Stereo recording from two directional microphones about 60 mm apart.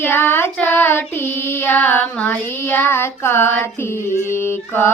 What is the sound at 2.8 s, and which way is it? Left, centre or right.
Child singing, left.